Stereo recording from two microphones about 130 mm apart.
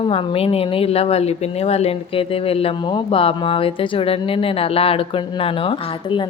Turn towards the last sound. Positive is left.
turn(degrees=40)  # may be behind; listen again after turning